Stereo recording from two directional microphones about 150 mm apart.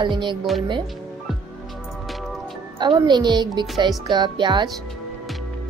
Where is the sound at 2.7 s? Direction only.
30° right (ahead or behind).